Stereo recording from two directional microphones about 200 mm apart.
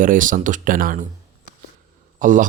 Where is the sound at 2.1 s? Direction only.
40° right (ahead or behind).